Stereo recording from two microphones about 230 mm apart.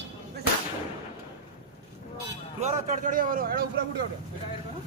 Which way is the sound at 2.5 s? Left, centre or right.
Right.